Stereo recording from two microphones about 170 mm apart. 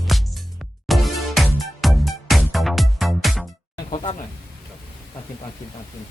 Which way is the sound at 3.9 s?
35° left (ahead or behind).